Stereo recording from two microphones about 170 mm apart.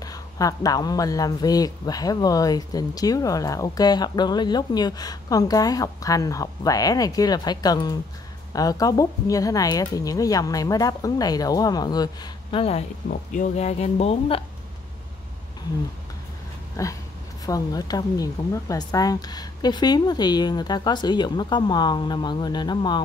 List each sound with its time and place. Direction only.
0.0 s speech: 20° left (ahead or behind)
13.1 s speech: 50° left (ahead or behind)
16.8 s a sound: 20° left (ahead or behind)
17.5 s speech: 20° left (ahead or behind)